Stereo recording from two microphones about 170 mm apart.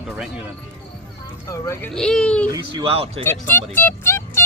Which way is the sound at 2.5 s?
30° right (ahead or behind).